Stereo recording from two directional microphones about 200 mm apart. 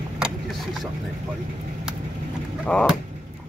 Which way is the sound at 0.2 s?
Centre (ahead or behind).